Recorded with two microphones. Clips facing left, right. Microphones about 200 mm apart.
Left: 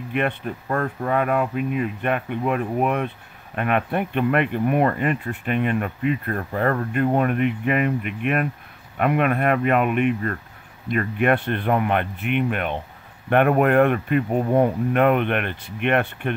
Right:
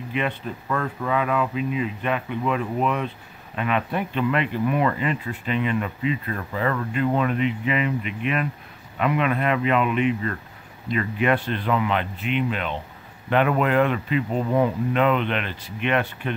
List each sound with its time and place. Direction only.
0.1 s speech: 50° left (ahead or behind)